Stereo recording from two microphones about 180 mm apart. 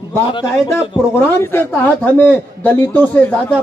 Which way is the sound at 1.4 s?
10° left (ahead or behind).